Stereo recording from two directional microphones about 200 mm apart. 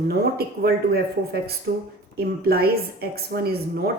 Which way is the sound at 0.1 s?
50° right (ahead or behind).